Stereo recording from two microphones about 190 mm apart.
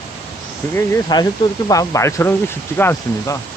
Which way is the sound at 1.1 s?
20° left (ahead or behind).